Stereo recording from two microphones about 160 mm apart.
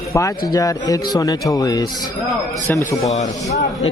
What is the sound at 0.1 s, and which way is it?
Speech, 20° left (ahead or behind).